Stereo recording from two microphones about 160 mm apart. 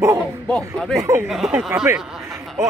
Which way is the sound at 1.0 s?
15° right (ahead or behind).